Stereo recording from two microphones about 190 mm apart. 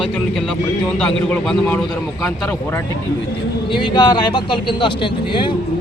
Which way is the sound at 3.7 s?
25° left (ahead or behind).